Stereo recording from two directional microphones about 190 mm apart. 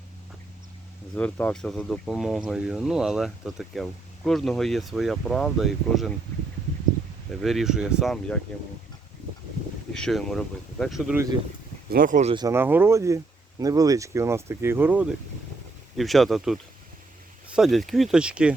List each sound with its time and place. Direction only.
1.1 s speech: 5° left (ahead or behind)
7.3 s speech: centre (ahead or behind)
9.9 s speech: centre (ahead or behind)
11.9 s speech: 45° right (ahead or behind)
12.3 s speech: 20° right (ahead or behind)